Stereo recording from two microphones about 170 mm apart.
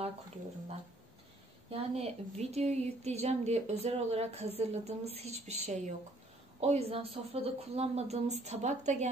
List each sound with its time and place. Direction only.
1.7 s a woman's voice: 40° right (ahead or behind)